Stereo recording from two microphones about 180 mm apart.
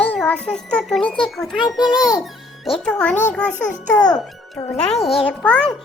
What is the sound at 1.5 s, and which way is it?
Speech, 25° left (ahead or behind).